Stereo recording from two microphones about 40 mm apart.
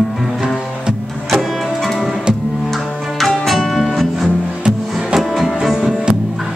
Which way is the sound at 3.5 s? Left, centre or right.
Centre.